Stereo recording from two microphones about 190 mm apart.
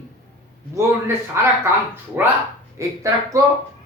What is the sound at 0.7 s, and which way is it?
Speech, 15° right (ahead or behind).